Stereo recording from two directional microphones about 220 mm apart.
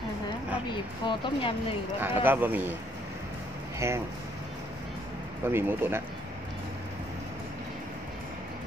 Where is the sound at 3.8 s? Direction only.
10° right (ahead or behind).